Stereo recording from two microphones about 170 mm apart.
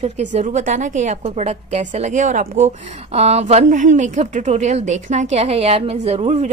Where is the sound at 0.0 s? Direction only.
40° right (ahead or behind).